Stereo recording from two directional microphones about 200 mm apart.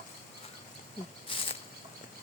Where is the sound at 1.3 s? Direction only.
25° left (ahead or behind).